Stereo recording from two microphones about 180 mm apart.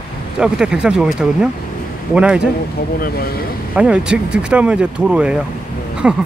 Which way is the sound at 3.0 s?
55° left (ahead or behind).